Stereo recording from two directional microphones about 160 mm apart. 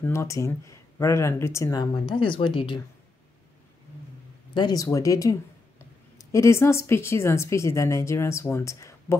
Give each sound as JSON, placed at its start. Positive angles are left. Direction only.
{"t": 0.0, "sound": "speech", "side_deg": 15}
{"t": 4.6, "sound": "a woman's voice", "side_deg": 25}